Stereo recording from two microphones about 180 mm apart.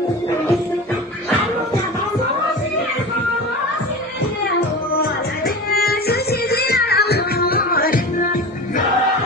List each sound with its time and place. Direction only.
5.7 s music: 60° left (ahead or behind)